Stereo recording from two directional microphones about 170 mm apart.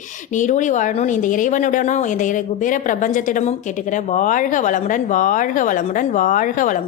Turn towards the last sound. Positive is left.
turn(degrees=50)  # may be behind; listen again after turning